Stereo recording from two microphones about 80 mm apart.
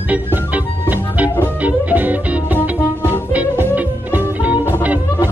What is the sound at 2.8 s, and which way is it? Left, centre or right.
Music, left.